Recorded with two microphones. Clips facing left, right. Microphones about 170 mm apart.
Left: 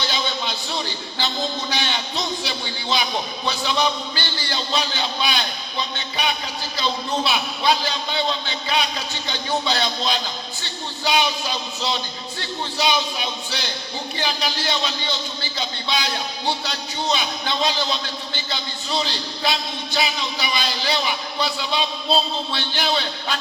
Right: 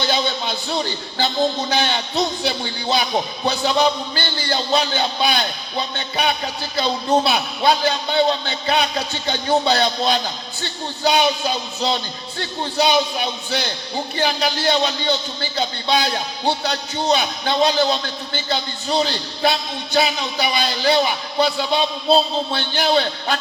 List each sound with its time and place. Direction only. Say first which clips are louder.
1.7 s a man's voice: right 5 dB; 45° right (ahead or behind)
6.7 s a man's voice: right 6 dB; 45° right (ahead or behind)
14.2 s a man's voice: right 5 dB; 45° right (ahead or behind)